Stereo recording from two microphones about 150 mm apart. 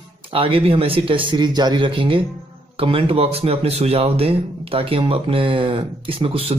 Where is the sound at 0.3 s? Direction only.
35° right (ahead or behind).